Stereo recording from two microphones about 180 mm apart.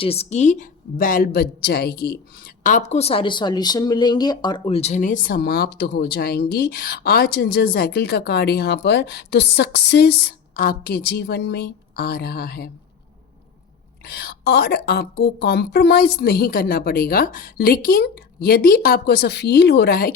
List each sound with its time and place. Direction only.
0.0 s a woman's voice: 35° left (ahead or behind); by 12.7 s 60° left (ahead or behind)
14.0 s a woman's voice: 60° left (ahead or behind)